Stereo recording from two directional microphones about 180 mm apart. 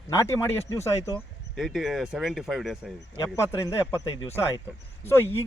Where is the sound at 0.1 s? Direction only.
15° left (ahead or behind).